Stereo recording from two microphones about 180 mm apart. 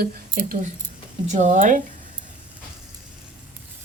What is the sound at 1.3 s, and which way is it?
Speech, 40° right (ahead or behind).